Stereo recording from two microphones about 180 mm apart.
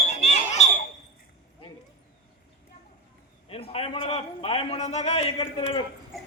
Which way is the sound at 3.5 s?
30° left (ahead or behind).